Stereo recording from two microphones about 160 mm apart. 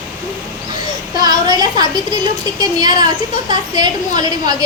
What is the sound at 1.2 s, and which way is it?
A woman's voice, 25° right (ahead or behind).